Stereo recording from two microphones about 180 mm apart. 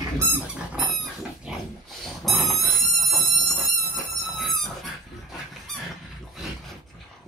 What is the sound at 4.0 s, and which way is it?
Dog, centre (ahead or behind).